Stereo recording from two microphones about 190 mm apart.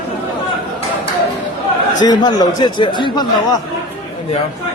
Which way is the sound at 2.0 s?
20° left (ahead or behind).